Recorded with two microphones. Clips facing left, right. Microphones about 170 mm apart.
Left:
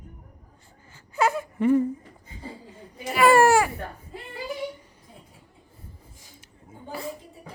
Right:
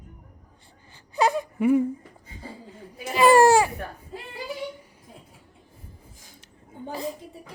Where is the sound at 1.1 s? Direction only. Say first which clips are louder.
Right 1 dB; 15° right (ahead or behind).